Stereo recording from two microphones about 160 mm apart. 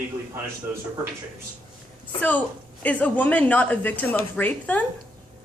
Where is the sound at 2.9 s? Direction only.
10° left (ahead or behind).